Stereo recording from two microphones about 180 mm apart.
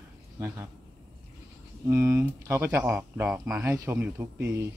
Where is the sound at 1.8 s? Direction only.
15° right (ahead or behind).